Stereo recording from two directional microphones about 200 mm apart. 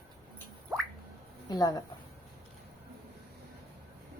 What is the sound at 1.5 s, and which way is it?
Speech, 20° left (ahead or behind).